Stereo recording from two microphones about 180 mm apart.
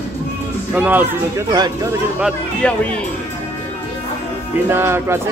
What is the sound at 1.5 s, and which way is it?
Speech, 20° right (ahead or behind).